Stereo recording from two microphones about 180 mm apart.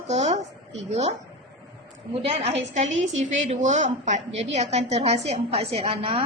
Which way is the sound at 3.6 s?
40° right (ahead or behind).